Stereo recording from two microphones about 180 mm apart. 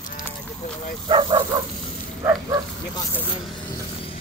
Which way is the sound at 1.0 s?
25° right (ahead or behind).